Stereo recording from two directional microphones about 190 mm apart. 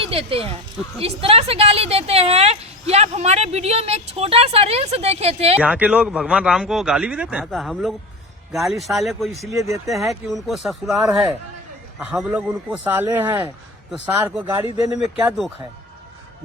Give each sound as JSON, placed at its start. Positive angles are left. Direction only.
{"t": 0.0, "sound": "speech", "side_deg": -30}
{"t": 5.5, "sound": "speech", "side_deg": -5}
{"t": 9.5, "sound": "a man's voice", "side_deg": -15}
{"t": 9.8, "sound": "a man's voice", "side_deg": 0}